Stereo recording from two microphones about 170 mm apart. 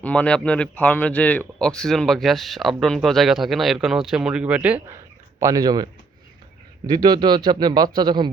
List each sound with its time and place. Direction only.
0.0 s speech: 10° left (ahead or behind); by 4.9 s 10° right (ahead or behind)
5.4 s a man's voice: 20° right (ahead or behind)